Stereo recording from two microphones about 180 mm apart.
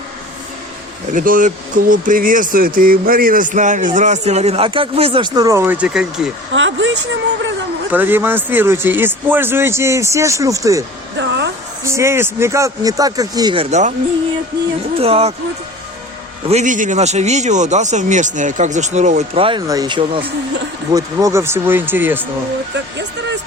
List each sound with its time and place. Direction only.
1.1 s speech: 50° right (ahead or behind); by 6.3 s 5° right (ahead or behind)
6.5 s speech: 90° right
7.9 s speech: 10° right (ahead or behind)
11.2 s a sound: 75° right (ahead or behind)
11.8 s speech: 15° right (ahead or behind)
13.7 s a man's voice: 40° right (ahead or behind)
14.9 s a man's voice: 35° right (ahead or behind)
16.5 s a man's voice: 40° right (ahead or behind); by 22.2 s 10° right (ahead or behind)
22.7 s speech: 80° right